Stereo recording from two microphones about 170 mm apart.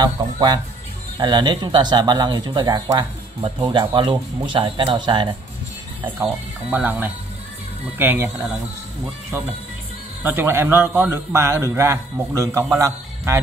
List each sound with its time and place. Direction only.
0.0 s speech: 25° right (ahead or behind)
6.2 s a man's voice: 10° right (ahead or behind)
10.2 s a man's voice: 15° right (ahead or behind)